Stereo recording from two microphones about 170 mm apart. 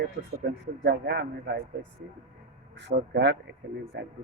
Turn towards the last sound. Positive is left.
turn(degrees=-90)